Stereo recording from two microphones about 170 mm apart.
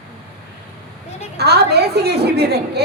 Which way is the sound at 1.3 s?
75° right (ahead or behind).